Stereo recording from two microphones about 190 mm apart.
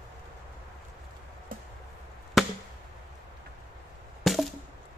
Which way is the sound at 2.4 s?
Centre (ahead or behind).